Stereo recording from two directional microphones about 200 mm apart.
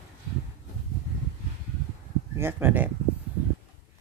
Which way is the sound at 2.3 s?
10° right (ahead or behind).